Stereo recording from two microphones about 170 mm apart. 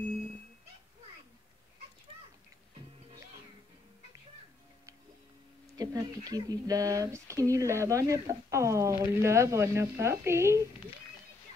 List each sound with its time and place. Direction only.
5.8 s speech: 20° right (ahead or behind)